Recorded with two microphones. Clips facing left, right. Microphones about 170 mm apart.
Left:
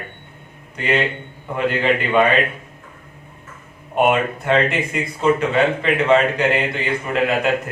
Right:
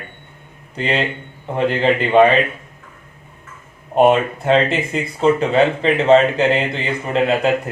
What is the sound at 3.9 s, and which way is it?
Speech, 30° right (ahead or behind).